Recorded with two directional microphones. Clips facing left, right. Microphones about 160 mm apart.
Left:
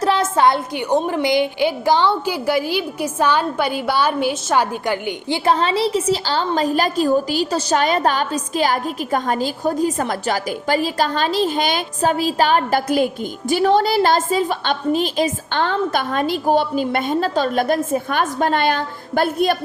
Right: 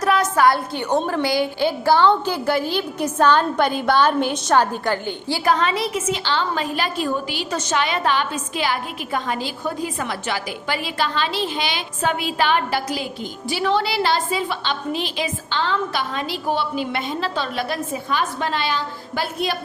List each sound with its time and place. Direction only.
0.0 s a woman's voice: 30° left (ahead or behind)
5.5 s a woman's voice: 30° left (ahead or behind); by 19.5 s 50° left (ahead or behind)